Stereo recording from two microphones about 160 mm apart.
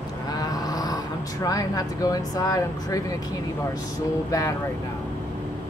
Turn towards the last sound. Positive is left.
turn(degrees=20)  # may be behind; listen again after turning